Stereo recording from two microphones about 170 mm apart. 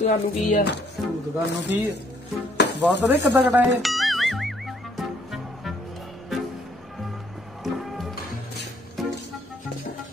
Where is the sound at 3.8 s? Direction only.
Centre (ahead or behind).